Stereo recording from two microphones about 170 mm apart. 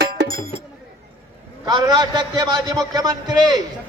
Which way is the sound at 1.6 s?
25° right (ahead or behind).